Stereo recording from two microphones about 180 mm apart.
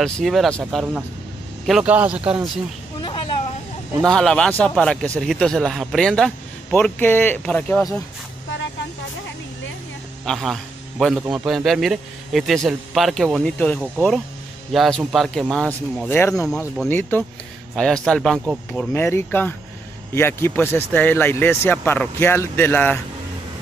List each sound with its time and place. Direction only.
0.0 s a man's voice: centre (ahead or behind)
3.0 s a sound: 30° left (ahead or behind)
4.0 s a man's voice: 5° left (ahead or behind)
10.2 s a man's voice: centre (ahead or behind)
18.7 s speech: 10° left (ahead or behind)